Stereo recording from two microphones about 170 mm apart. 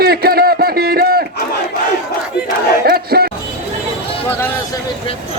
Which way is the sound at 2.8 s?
65° right (ahead or behind).